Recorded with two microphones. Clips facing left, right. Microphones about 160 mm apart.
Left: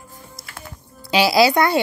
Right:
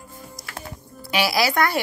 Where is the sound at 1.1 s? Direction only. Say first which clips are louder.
Left 6 dB; 25° left (ahead or behind).